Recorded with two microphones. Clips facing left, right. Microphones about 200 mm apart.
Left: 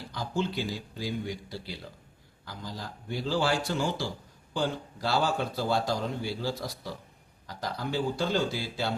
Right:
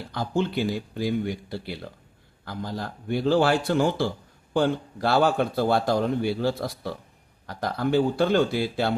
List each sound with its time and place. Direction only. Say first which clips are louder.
0.1 s a man's voice: right 5 dB; 60° right (ahead or behind)